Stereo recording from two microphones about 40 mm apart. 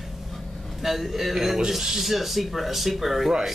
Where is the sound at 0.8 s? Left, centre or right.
Centre.